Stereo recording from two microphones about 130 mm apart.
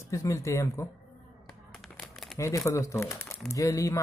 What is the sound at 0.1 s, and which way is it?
Speech, 25° left (ahead or behind).